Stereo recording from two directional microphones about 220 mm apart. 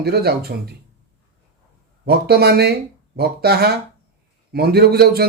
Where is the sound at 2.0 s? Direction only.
45° right (ahead or behind).